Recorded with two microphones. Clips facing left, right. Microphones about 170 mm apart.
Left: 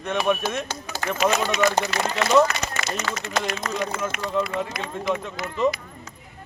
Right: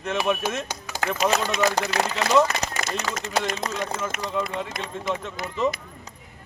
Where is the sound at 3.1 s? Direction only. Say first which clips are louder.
Even; 25° right (ahead or behind).